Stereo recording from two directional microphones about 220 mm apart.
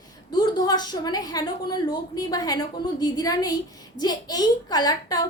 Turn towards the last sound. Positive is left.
turn(degrees=20)  # may be behind; listen again after turning